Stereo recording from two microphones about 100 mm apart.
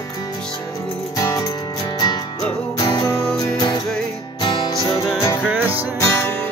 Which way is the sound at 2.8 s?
45° left (ahead or behind).